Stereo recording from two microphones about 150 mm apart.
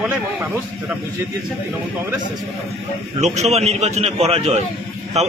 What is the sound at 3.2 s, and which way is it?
A man's voice, 50° right (ahead or behind).